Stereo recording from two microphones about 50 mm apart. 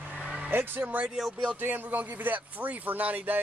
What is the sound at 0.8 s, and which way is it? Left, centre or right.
Speech, right.